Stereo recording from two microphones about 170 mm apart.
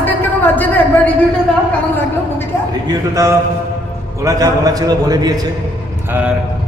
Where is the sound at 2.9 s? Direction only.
20° right (ahead or behind).